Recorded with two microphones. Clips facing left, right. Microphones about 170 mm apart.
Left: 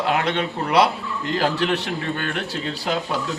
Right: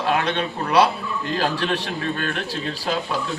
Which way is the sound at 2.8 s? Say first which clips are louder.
Left 1 dB; 20° left (ahead or behind).